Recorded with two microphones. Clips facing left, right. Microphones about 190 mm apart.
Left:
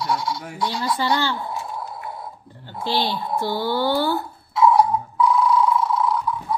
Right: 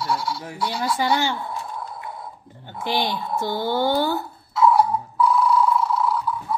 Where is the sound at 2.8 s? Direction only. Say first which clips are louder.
Left 1 dB; 15° right (ahead or behind).